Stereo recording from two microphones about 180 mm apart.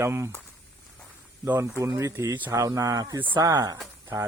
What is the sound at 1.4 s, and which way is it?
Speech, 15° right (ahead or behind).